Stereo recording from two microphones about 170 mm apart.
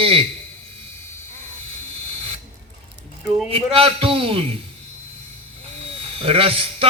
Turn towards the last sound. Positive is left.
turn(degrees=-35)  # may be behind; listen again after turning